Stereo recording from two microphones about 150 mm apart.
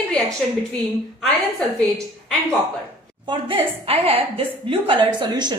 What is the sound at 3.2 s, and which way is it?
A woman's voice, 40° right (ahead or behind).